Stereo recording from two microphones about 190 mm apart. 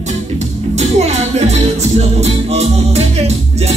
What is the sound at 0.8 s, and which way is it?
Music, 35° right (ahead or behind).